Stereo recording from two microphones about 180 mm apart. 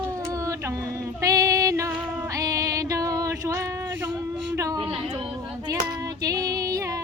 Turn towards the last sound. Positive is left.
turn(degrees=-20)  # may be behind; listen again after turning